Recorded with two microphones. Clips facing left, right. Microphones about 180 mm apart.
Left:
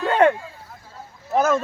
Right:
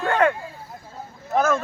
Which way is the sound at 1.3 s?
20° left (ahead or behind).